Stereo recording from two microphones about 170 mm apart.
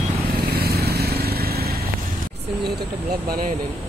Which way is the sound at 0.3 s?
65° right (ahead or behind).